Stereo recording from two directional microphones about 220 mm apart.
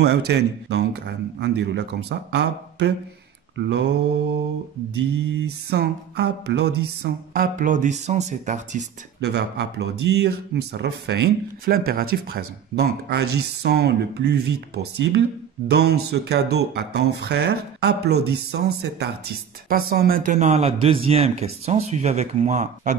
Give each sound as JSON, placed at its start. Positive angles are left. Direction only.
{"t": 0.3, "sound": "speech", "side_deg": -50}
{"t": 5.3, "sound": "a sound", "side_deg": -50}
{"t": 9.2, "sound": "speech", "side_deg": -50}
{"t": 15.7, "sound": "speech", "side_deg": -45}